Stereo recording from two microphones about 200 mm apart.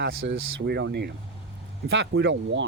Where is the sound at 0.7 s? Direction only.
55° right (ahead or behind).